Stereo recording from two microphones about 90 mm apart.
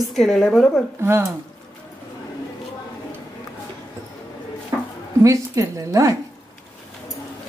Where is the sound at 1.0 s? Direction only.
25° right (ahead or behind).